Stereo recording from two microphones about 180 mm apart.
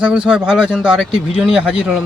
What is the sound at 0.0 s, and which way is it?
Speech, 5° right (ahead or behind).